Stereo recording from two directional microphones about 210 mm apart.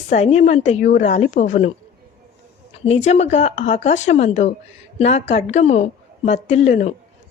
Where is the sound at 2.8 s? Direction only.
30° left (ahead or behind).